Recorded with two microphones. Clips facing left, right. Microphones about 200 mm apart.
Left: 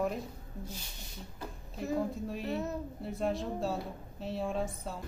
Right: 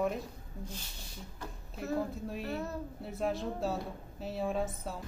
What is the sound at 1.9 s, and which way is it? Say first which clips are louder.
A woman's voice: left 1 dB; centre (ahead or behind).